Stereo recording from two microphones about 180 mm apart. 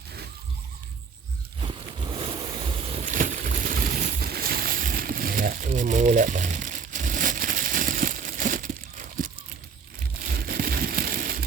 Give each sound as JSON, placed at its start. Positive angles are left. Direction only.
{"t": 1.6, "sound": "boat", "side_deg": -30}
{"t": 3.2, "sound": "boat", "side_deg": -50}
{"t": 10.3, "sound": "a sound", "side_deg": -55}